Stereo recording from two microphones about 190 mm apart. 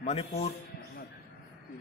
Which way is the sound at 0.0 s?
35° left (ahead or behind).